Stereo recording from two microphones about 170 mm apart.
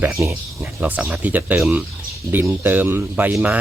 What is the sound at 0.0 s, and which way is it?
Speech, 15° right (ahead or behind).